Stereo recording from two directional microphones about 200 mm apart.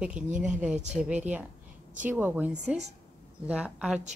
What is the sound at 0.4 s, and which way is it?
A woman's voice, 5° right (ahead or behind).